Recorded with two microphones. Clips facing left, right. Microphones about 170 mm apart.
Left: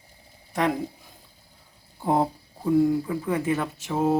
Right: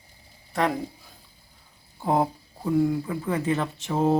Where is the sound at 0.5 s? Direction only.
15° left (ahead or behind).